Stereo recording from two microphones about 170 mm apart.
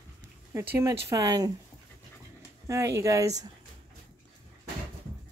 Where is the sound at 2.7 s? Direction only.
15° right (ahead or behind).